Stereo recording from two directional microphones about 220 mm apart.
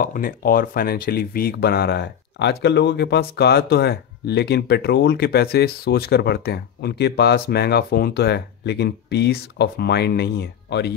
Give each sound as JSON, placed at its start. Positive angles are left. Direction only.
{"t": 0.0, "sound": "speech", "side_deg": 40}